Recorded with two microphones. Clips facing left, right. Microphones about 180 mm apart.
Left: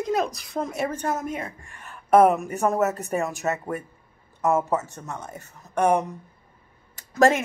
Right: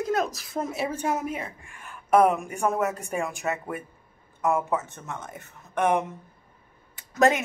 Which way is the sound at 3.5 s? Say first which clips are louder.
Left 3 dB; 40° left (ahead or behind).